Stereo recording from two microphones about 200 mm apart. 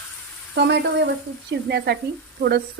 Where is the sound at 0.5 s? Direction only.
55° right (ahead or behind).